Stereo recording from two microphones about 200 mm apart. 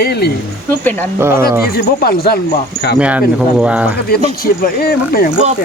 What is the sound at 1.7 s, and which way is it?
Speech, 50° left (ahead or behind).